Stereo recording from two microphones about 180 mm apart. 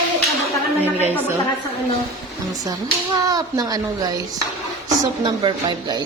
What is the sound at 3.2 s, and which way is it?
A woman's voice, 20° right (ahead or behind).